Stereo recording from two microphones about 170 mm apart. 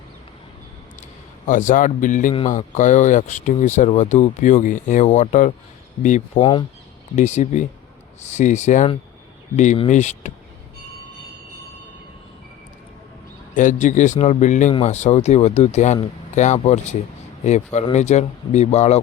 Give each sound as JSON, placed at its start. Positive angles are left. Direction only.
{"t": 1.5, "sound": "speech", "side_deg": 50}
{"t": 6.4, "sound": "speech", "side_deg": 30}
{"t": 7.2, "sound": "speech", "side_deg": 45}
{"t": 9.9, "sound": "speech", "side_deg": 45}
{"t": 13.5, "sound": "speech", "side_deg": 50}